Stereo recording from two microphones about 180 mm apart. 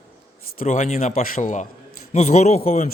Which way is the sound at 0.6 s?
40° left (ahead or behind).